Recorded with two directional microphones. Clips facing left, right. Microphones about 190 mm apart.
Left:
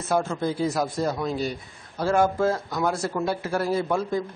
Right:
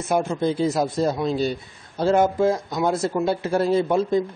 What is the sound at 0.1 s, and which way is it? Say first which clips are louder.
Speech: right 3 dB; 15° right (ahead or behind).